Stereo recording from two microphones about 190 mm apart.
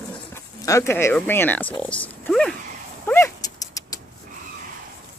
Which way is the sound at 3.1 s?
15° left (ahead or behind).